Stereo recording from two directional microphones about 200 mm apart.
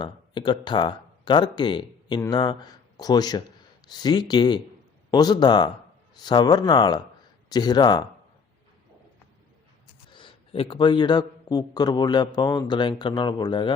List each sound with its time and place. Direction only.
0.0 s a man's voice: 25° left (ahead or behind)
10.1 s a man's voice: 25° left (ahead or behind)